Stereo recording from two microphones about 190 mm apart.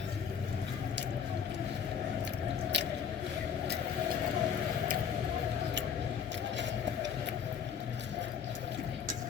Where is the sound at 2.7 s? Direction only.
65° right (ahead or behind).